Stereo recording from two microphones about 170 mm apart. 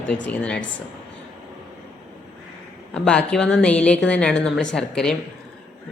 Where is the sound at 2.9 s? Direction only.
5° left (ahead or behind).